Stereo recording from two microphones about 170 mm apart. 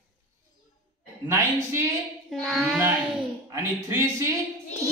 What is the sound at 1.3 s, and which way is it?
Speech, 15° right (ahead or behind).